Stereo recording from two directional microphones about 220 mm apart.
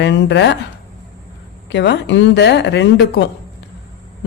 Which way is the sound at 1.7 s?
50° left (ahead or behind).